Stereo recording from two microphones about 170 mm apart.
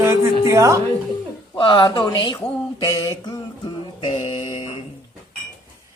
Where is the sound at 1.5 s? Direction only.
30° left (ahead or behind).